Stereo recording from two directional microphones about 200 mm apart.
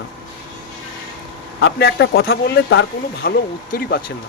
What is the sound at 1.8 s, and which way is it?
Speech, 55° left (ahead or behind).